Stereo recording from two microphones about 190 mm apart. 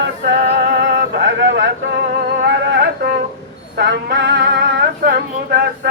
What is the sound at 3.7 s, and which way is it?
Male singing, 60° right (ahead or behind).